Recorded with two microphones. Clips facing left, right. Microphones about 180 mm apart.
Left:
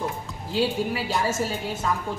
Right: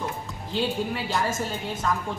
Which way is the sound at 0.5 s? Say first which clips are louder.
Left 3 dB; 5° left (ahead or behind).